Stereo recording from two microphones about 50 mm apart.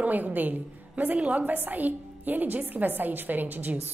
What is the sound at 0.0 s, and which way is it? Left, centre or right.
A woman's voice, right.